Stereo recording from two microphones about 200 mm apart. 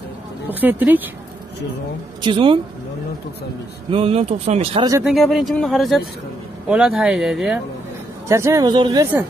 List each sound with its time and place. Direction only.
0.5 s speech: 10° right (ahead or behind)
2.2 s speech: 25° right (ahead or behind)
3.9 s speech: 30° right (ahead or behind)
5.0 s speech: centre (ahead or behind)
8.3 s speech: 15° right (ahead or behind)